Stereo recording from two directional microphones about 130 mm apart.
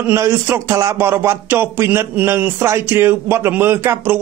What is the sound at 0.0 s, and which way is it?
A man's voice, 20° right (ahead or behind).